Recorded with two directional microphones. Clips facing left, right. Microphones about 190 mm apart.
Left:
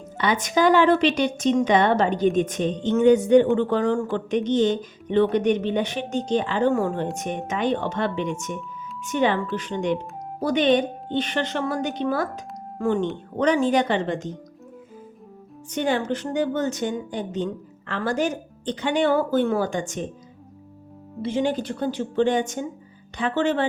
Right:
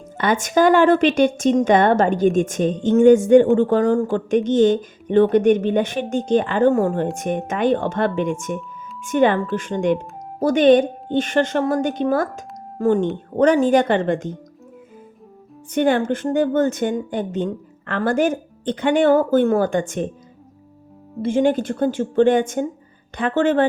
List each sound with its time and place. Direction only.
0.2 s a woman's voice: 50° right (ahead or behind)
15.7 s a woman's voice: 55° right (ahead or behind)
21.2 s a woman's voice: 50° right (ahead or behind)